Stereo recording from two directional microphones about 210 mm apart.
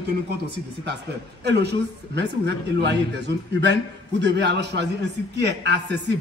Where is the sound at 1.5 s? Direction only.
55° right (ahead or behind).